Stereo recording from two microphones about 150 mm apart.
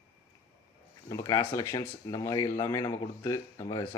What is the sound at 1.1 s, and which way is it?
Speech, 25° left (ahead or behind).